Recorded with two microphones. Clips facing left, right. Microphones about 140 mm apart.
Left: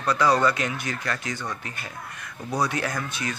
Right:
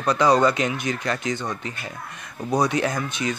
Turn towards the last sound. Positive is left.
turn(degrees=-20)  # may be behind; listen again after turning